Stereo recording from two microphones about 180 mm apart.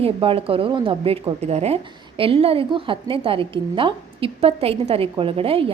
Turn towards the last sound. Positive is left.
turn(degrees=-30)  # may be behind; listen again after turning